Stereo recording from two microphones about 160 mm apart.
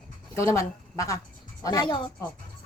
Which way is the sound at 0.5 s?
20° left (ahead or behind).